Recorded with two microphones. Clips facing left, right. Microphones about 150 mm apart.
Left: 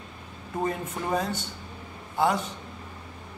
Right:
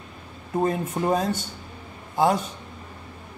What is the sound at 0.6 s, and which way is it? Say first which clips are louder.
Speech: right 6 dB; 35° right (ahead or behind).